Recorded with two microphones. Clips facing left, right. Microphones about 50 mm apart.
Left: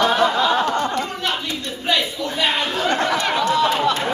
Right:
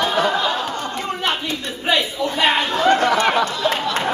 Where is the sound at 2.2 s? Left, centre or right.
Right.